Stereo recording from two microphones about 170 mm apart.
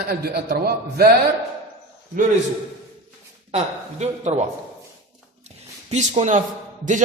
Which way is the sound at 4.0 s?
40° right (ahead or behind).